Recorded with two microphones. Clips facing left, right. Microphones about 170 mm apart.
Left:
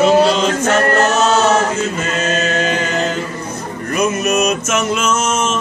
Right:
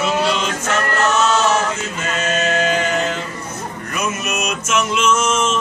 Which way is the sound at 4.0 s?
40° left (ahead or behind).